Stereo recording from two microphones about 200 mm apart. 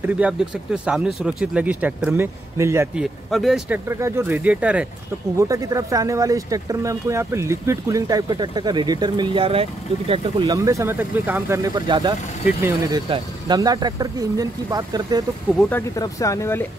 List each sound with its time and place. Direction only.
0.0 s speech: 5° right (ahead or behind)
3.0 s speech: centre (ahead or behind); by 10.5 s 30° right (ahead or behind)
10.5 s speech: 15° right (ahead or behind)
15.7 s speech: 15° left (ahead or behind)